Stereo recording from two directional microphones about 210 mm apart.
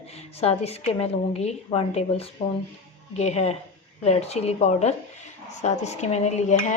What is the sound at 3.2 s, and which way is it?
Dishes, 30° left (ahead or behind).